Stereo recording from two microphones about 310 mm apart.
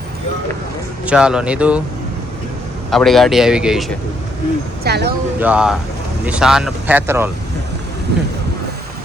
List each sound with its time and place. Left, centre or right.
1.0 s speech: centre
2.9 s speech: centre
4.8 s speech: right
5.4 s speech: centre